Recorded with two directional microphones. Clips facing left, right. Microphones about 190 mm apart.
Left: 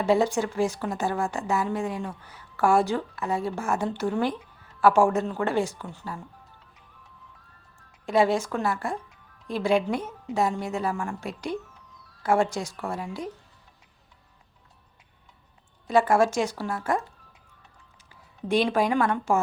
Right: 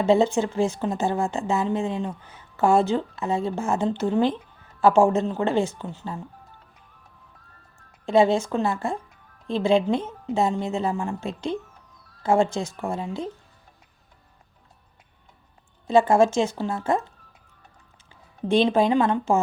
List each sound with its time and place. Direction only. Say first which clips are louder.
0.0 s speech: right 3 dB; 25° right (ahead or behind)
8.0 s speech: right 3 dB; 25° right (ahead or behind)
15.9 s speech: right 3 dB; 25° right (ahead or behind)
18.1 s speech: right 3 dB; 25° right (ahead or behind)